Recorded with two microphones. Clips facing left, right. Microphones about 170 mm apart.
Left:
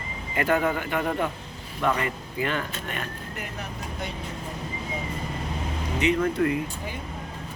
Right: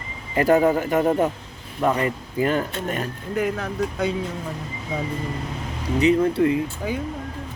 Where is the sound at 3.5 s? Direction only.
90° right.